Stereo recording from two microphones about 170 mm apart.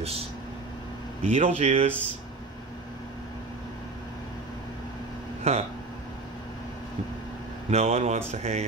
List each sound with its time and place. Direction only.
1.2 s speech: 35° right (ahead or behind)
5.5 s speech: 40° right (ahead or behind)
7.7 s speech: 40° right (ahead or behind)